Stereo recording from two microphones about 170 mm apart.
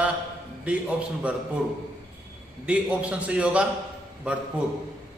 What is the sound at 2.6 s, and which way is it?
A man's voice, 10° right (ahead or behind).